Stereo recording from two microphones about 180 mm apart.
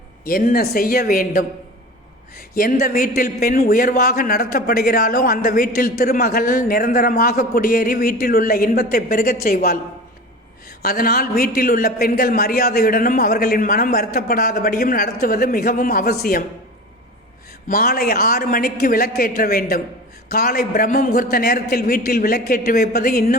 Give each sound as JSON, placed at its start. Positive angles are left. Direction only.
{"t": 0.3, "sound": "speech", "side_deg": 55}
{"t": 2.6, "sound": "a man's voice", "side_deg": 50}
{"t": 10.8, "sound": "a man's voice", "side_deg": 60}
{"t": 17.7, "sound": "a man's voice", "side_deg": 55}